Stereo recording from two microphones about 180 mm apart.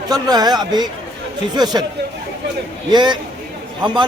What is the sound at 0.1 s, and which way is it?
A man's voice, 20° right (ahead or behind).